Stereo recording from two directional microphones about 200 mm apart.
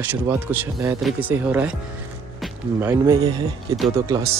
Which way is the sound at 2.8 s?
15° right (ahead or behind).